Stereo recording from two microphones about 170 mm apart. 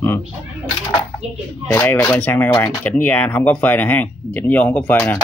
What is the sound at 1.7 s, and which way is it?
Speech, 15° left (ahead or behind).